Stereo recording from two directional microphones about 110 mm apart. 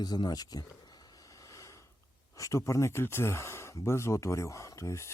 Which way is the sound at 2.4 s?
30° left (ahead or behind).